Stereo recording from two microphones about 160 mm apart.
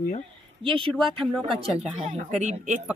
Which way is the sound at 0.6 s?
35° right (ahead or behind).